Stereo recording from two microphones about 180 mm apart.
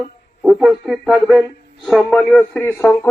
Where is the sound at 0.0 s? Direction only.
Centre (ahead or behind).